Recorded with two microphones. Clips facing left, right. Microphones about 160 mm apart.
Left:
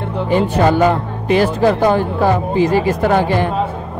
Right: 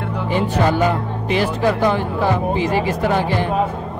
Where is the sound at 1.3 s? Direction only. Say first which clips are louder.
Left 5 dB; 45° left (ahead or behind).